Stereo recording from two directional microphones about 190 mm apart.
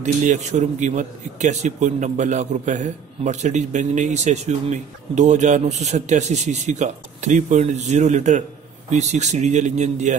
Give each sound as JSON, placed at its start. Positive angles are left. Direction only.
{"t": 0.0, "sound": "a man's voice", "side_deg": -40}